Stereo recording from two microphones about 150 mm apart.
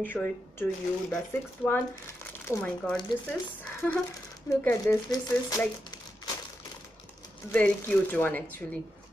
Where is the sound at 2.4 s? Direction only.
10° left (ahead or behind).